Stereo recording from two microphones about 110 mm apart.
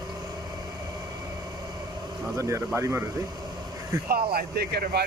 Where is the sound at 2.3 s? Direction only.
25° right (ahead or behind).